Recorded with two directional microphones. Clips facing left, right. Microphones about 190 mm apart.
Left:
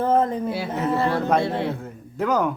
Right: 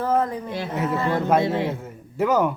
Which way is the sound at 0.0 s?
25° left (ahead or behind).